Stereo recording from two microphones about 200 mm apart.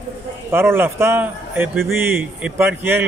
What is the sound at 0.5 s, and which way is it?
A man's voice, 10° right (ahead or behind).